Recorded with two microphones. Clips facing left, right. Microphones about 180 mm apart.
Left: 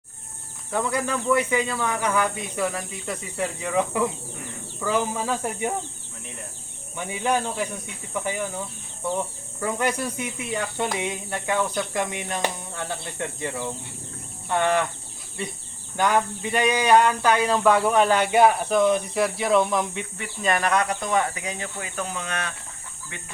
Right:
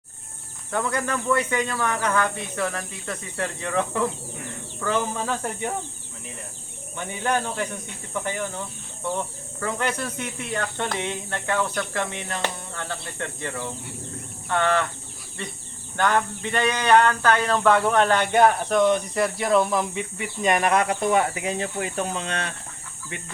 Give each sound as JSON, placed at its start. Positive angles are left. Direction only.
{"t": 0.7, "sound": "speech", "side_deg": 10}
{"t": 6.9, "sound": "speech", "side_deg": 10}
{"t": 14.4, "sound": "cricket", "side_deg": 15}
{"t": 16.0, "sound": "a sound", "side_deg": 10}